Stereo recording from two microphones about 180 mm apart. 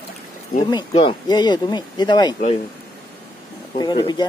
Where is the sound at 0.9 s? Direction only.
30° left (ahead or behind).